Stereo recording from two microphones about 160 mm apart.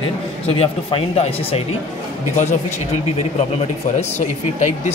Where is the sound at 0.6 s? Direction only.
35° left (ahead or behind).